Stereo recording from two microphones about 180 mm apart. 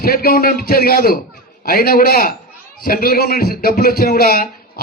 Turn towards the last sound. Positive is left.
turn(degrees=55)  # may be behind; listen again after turning